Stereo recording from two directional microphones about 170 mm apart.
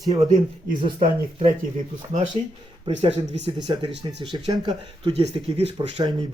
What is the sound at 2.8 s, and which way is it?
Speech, 35° right (ahead or behind).